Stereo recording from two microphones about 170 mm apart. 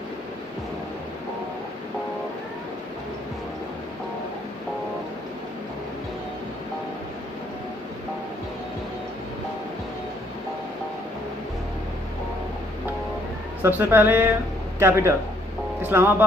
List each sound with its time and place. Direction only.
13.6 s a woman's voice: 10° right (ahead or behind)